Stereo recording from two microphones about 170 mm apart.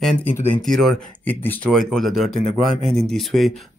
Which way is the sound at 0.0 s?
10° left (ahead or behind).